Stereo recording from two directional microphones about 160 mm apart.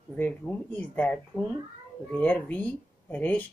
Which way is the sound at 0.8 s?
10° left (ahead or behind).